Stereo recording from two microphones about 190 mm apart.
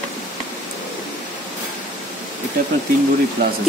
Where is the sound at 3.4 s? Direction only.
55° right (ahead or behind).